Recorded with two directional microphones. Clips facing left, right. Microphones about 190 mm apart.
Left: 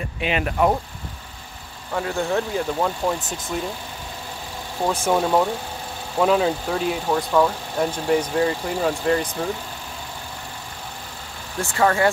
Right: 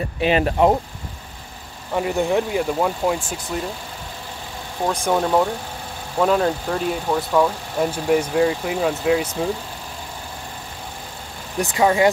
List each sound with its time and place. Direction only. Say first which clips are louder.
0.2 s speech: right 4 dB; 35° right (ahead or behind)
1.9 s speech: right 3 dB; 15° right (ahead or behind)
4.8 s speech: even; 5° left (ahead or behind)
11.5 s speech: right 2 dB; 15° right (ahead or behind)